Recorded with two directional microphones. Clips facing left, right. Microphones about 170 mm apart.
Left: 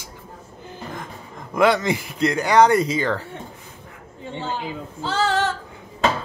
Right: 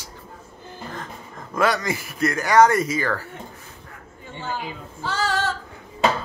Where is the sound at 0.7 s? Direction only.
15° left (ahead or behind).